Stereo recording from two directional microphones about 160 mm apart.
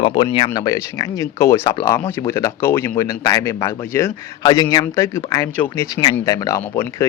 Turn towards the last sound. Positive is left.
turn(degrees=15)  # may be behind; listen again after turning